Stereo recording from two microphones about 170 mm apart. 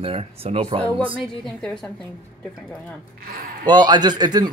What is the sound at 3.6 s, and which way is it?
Speech, 25° right (ahead or behind).